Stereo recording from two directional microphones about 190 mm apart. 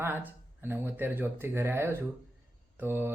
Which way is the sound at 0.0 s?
10° right (ahead or behind).